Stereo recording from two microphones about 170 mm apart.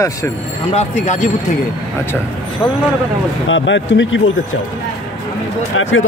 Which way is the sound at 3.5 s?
90° left.